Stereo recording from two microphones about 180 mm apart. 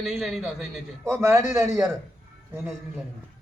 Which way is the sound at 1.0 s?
15° right (ahead or behind).